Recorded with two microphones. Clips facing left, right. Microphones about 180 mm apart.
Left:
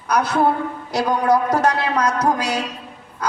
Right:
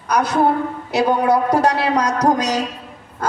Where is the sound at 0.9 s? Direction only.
30° right (ahead or behind).